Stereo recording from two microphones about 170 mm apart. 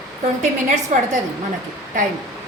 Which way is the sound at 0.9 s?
45° right (ahead or behind).